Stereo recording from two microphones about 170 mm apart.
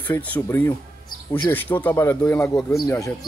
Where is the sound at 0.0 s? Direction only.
10° left (ahead or behind).